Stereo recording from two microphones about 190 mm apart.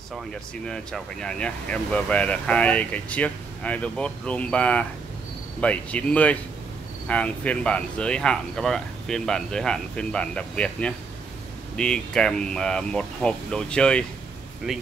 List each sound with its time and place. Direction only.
0.1 s speech: centre (ahead or behind)